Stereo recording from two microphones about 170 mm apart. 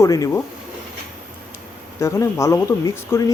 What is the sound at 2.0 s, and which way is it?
Speech, 15° left (ahead or behind).